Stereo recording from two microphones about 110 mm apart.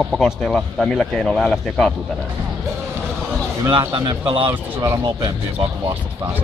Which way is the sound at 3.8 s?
40° right (ahead or behind).